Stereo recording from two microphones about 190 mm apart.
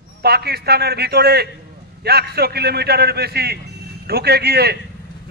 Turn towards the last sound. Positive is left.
turn(degrees=-60)  # may be behind; listen again after turning